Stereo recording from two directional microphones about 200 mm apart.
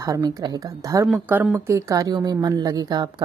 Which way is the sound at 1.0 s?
5° right (ahead or behind).